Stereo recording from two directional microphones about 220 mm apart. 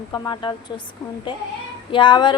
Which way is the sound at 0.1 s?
20° left (ahead or behind).